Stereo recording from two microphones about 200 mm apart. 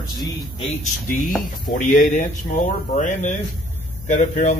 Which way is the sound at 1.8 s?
35° left (ahead or behind).